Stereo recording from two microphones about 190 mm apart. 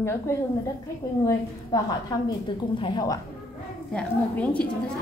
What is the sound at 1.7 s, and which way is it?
A woman's voice, 20° left (ahead or behind).